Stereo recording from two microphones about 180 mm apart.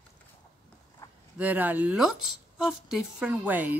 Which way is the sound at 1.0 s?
15° left (ahead or behind).